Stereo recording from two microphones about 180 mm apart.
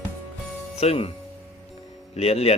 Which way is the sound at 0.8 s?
35° left (ahead or behind).